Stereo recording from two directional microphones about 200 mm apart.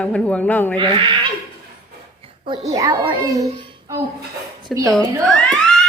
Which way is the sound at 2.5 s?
35° right (ahead or behind).